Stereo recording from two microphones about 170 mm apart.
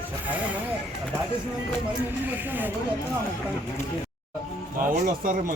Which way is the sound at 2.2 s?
10° right (ahead or behind).